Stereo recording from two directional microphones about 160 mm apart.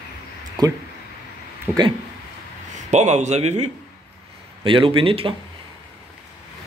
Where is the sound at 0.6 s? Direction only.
25° right (ahead or behind).